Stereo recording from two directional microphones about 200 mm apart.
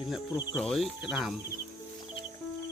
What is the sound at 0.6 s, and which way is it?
Speech, 5° left (ahead or behind).